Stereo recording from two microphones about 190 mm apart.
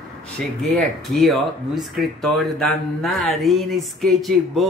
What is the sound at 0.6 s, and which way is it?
Speech, centre (ahead or behind).